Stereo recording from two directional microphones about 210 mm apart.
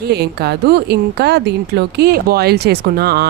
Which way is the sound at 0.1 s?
50° right (ahead or behind).